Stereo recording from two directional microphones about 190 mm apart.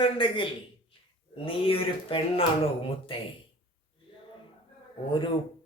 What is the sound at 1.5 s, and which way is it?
Speech, 30° left (ahead or behind).